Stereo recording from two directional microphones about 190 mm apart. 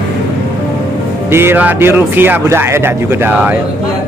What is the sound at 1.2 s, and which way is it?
Speech, 10° right (ahead or behind).